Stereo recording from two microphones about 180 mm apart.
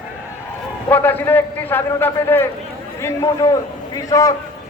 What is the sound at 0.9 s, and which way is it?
A man's voice, 10° left (ahead or behind).